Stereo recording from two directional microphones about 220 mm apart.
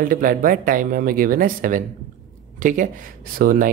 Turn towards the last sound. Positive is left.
turn(degrees=-40)  # may be behind; listen again after turning